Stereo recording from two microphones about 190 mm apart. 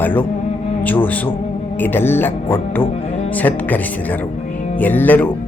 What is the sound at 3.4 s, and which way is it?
Speech, 10° left (ahead or behind).